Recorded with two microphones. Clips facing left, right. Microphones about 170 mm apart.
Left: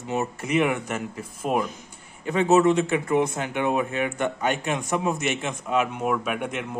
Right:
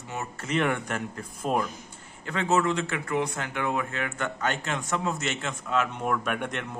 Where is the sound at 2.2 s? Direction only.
20° left (ahead or behind).